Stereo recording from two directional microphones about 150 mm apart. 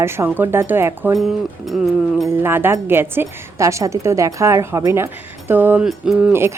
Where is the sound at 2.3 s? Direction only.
15° right (ahead or behind).